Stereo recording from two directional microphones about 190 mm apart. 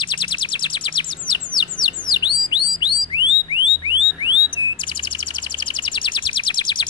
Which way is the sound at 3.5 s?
25° left (ahead or behind).